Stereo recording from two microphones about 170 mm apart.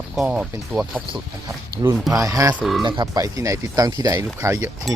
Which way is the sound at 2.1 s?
20° right (ahead or behind).